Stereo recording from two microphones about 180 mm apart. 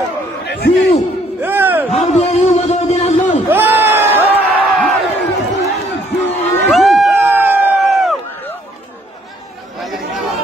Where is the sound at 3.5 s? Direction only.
10° right (ahead or behind).